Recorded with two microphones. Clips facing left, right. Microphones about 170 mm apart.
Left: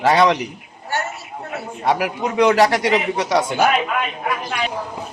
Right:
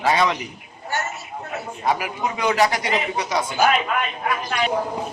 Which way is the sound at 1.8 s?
70° left (ahead or behind).